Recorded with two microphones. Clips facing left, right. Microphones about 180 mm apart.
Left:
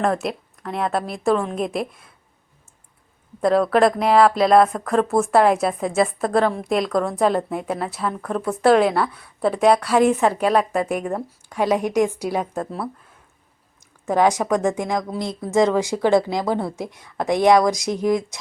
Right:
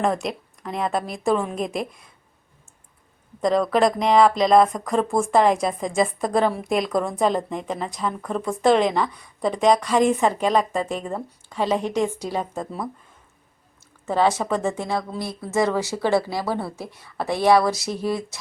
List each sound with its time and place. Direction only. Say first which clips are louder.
0.0 s a woman's voice: left 1 dB; centre (ahead or behind)
3.4 s a woman's voice: left 3 dB; 5° left (ahead or behind)
14.0 s speech: left 2 dB; 10° left (ahead or behind)